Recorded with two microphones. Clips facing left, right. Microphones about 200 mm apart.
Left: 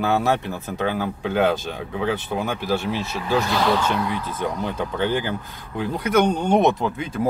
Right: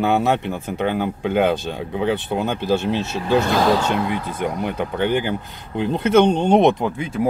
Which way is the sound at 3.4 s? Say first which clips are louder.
Right 3 dB; 45° right (ahead or behind).